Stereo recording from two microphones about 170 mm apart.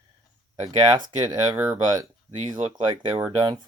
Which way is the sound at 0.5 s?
25° right (ahead or behind).